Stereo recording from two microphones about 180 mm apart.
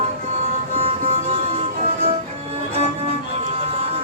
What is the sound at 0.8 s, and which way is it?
Music, 35° right (ahead or behind).